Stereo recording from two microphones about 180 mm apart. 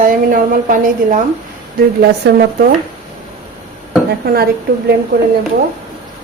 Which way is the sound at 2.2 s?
70° right (ahead or behind).